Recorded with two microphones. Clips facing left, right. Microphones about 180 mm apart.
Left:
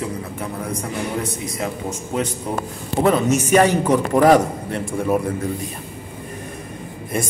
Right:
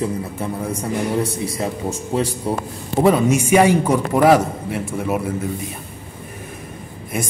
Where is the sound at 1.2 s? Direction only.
30° right (ahead or behind).